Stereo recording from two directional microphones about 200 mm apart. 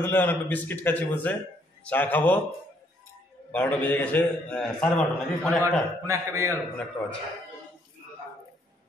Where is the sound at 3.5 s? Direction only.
10° left (ahead or behind).